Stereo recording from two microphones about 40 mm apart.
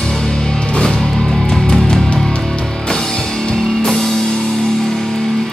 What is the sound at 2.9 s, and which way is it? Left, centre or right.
Music, centre.